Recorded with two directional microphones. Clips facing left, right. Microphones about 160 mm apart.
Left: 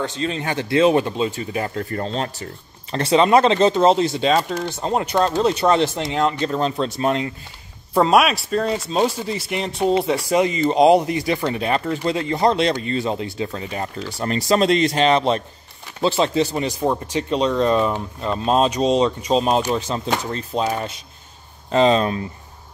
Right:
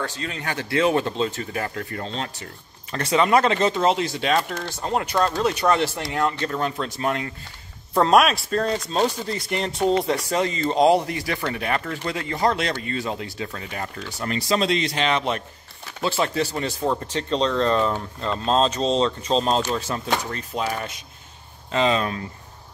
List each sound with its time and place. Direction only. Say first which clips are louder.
0.0 s speech: left 6 dB; 25° left (ahead or behind)
1.8 s a man's voice: left 5 dB; 40° left (ahead or behind)
2.9 s speech: left 4 dB; 30° left (ahead or behind)
7.9 s speech: left 1 dB; 5° left (ahead or behind); by 14.6 s 35° left (ahead or behind)
14.6 s a man's voice: left 6 dB; 45° left (ahead or behind); by 22.2 s 30° left (ahead or behind)